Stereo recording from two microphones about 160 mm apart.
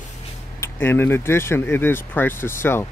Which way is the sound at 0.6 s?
15° left (ahead or behind).